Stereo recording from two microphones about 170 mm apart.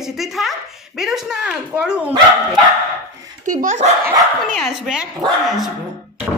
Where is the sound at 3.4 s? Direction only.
45° right (ahead or behind).